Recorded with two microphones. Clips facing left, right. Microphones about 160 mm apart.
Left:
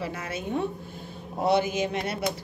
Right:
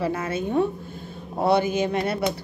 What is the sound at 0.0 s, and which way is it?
Speech, 50° right (ahead or behind).